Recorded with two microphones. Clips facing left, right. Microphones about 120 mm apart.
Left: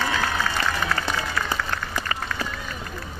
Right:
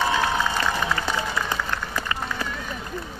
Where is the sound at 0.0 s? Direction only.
15° right (ahead or behind).